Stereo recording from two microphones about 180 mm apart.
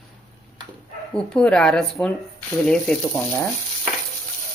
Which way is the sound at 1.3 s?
5° left (ahead or behind).